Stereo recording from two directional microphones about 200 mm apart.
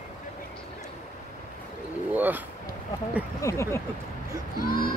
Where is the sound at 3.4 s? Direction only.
15° left (ahead or behind).